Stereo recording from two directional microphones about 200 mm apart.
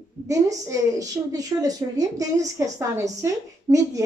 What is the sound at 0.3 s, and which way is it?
A woman's voice, 15° right (ahead or behind).